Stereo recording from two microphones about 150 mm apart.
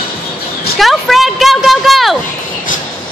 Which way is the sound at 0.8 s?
Centre (ahead or behind).